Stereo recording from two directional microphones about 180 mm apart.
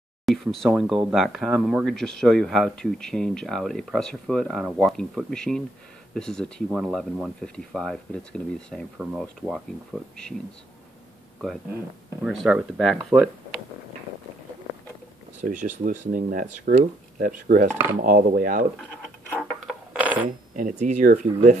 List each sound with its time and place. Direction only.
0.2 s speech: centre (ahead or behind)
8.9 s speech: 5° right (ahead or behind)
12.2 s speech: 5° right (ahead or behind)
15.5 s speech: 45° right (ahead or behind)
19.3 s coin: centre (ahead or behind)
20.2 s speech: 45° right (ahead or behind)